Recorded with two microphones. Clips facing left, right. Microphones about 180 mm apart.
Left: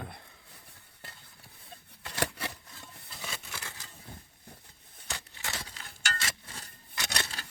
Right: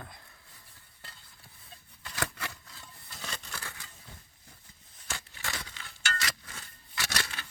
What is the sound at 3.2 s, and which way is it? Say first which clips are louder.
Scissors: even; 5° left (ahead or behind).